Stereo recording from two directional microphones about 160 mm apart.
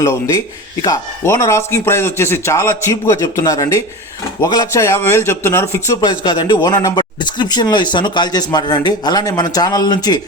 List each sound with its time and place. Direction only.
0.8 s a man's voice: 20° left (ahead or behind)